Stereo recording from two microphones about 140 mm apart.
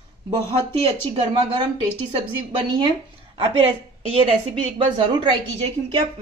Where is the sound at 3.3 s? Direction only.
40° right (ahead or behind).